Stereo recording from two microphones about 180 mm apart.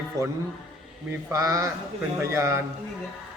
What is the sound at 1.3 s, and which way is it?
A man's voice, 15° right (ahead or behind).